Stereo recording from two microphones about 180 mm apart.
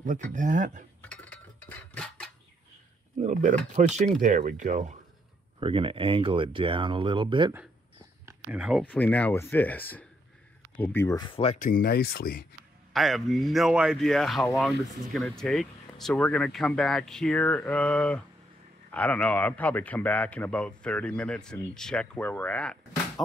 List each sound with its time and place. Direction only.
0.3 s speech: 45° right (ahead or behind)
1.0 s a sound: 5° left (ahead or behind)
3.2 s speech: 40° right (ahead or behind)
5.6 s speech: 30° right (ahead or behind)
8.3 s speech: 5° right (ahead or behind)
8.8 s a man's voice: 10° left (ahead or behind); by 11.5 s 30° left (ahead or behind)
11.5 s speech: 50° left (ahead or behind)
12.9 s a man's voice: centre (ahead or behind)